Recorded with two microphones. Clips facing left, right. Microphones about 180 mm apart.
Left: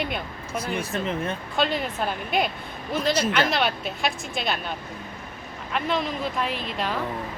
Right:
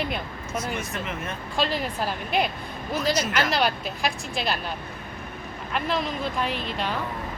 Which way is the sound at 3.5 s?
Centre (ahead or behind).